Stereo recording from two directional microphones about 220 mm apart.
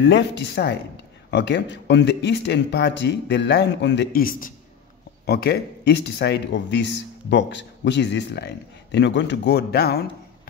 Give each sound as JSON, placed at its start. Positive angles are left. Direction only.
{"t": 0.0, "sound": "speech", "side_deg": 50}